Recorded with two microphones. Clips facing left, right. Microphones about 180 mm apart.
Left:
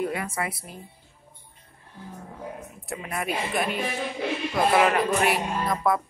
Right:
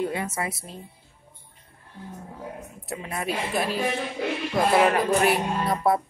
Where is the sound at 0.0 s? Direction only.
25° right (ahead or behind).